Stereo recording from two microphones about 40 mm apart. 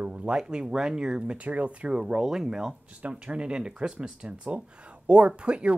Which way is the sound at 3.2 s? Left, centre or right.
Right.